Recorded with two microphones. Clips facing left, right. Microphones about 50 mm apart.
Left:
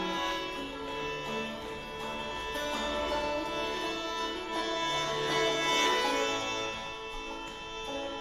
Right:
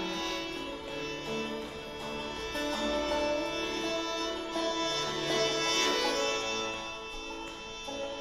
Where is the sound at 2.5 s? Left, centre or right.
Centre.